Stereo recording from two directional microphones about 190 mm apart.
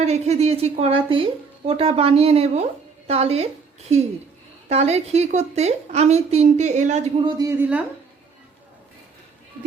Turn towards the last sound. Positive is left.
turn(degrees=-10)  # may be behind; listen again after turning